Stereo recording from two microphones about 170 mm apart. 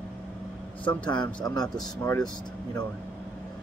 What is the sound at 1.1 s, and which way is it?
Speech, 25° left (ahead or behind).